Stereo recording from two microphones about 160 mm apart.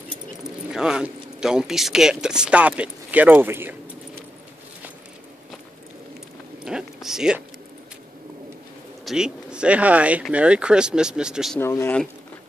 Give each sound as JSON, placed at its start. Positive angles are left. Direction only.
{"t": 0.4, "sound": "speech", "side_deg": -5}
{"t": 6.6, "sound": "zipper", "side_deg": -5}
{"t": 9.0, "sound": "speech", "side_deg": -5}
{"t": 11.5, "sound": "speech", "side_deg": 15}